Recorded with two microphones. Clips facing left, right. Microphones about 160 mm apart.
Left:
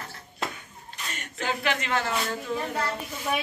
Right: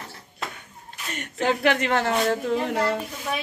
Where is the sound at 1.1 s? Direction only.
60° right (ahead or behind).